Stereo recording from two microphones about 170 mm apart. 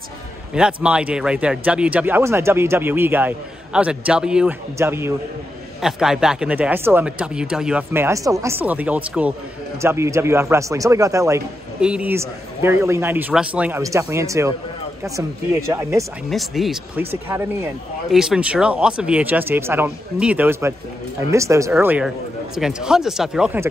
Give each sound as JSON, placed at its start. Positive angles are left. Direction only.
{"t": 0.6, "sound": "a man's voice", "side_deg": -5}
{"t": 5.8, "sound": "a man's voice", "side_deg": -5}
{"t": 11.8, "sound": "a man's voice", "side_deg": -5}
{"t": 15.7, "sound": "a man's voice", "side_deg": -20}
{"t": 16.3, "sound": "speech", "side_deg": 0}
{"t": 17.0, "sound": "a man's voice", "side_deg": -15}
{"t": 18.1, "sound": "a man's voice", "side_deg": -5}
{"t": 21.7, "sound": "speech", "side_deg": -5}